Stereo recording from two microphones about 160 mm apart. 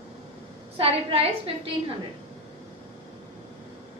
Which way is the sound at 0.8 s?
40° right (ahead or behind).